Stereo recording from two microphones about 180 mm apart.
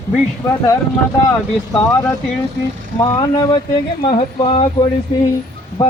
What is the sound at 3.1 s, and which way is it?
Speech, 20° left (ahead or behind).